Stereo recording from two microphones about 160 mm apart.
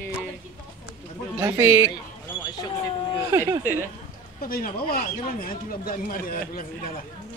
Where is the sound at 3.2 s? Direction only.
20° right (ahead or behind).